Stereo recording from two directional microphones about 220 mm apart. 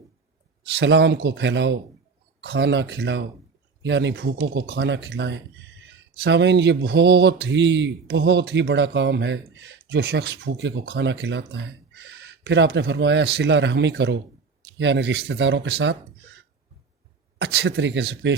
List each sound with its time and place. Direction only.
0.8 s speech: 50° right (ahead or behind)
17.4 s speech: 50° right (ahead or behind)